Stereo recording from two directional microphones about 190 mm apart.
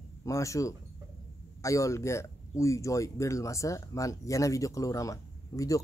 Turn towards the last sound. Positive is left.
turn(degrees=15)  # may be behind; listen again after turning